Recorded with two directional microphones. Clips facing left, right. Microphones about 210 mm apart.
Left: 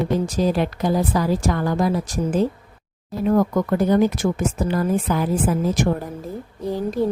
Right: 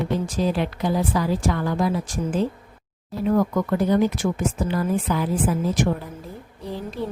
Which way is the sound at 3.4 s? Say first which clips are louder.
Left 2 dB; 45° left (ahead or behind).